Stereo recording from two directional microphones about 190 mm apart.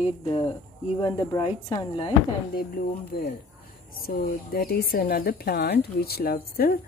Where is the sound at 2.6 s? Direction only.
50° left (ahead or behind).